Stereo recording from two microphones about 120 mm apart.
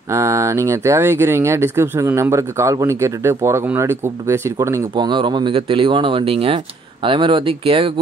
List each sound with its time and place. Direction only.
0.1 s speech: 25° right (ahead or behind)
4.9 s speech: 40° right (ahead or behind)